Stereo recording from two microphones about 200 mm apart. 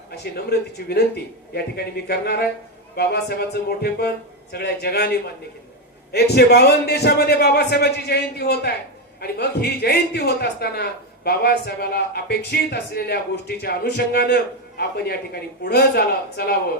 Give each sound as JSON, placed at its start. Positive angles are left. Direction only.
{"t": 0.1, "sound": "a man's voice", "side_deg": 55}